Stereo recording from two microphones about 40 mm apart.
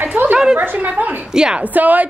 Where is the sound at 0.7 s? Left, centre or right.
Right.